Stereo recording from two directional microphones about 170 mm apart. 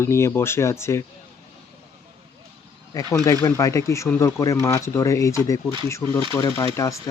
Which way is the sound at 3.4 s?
20° left (ahead or behind).